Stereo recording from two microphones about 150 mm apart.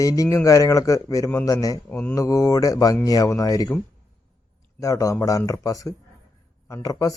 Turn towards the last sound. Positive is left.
turn(degrees=25)  # may be behind; listen again after turning